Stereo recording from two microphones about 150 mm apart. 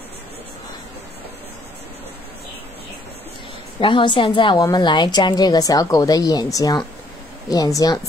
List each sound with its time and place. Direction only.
3.8 s a woman's voice: 35° left (ahead or behind)